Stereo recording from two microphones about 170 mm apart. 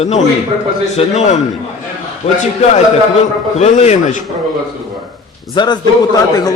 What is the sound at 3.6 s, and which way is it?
Speech, 45° left (ahead or behind).